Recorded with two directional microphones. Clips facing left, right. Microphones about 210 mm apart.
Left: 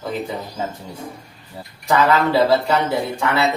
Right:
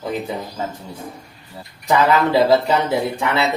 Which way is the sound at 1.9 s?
15° right (ahead or behind).